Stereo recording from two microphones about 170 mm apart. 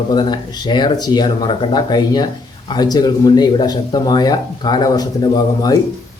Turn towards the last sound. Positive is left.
turn(degrees=20)  # may be behind; listen again after turning